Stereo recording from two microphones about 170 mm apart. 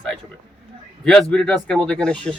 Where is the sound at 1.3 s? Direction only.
5° left (ahead or behind).